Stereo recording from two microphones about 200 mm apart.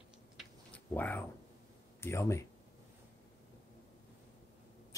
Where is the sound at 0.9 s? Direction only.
10° left (ahead or behind).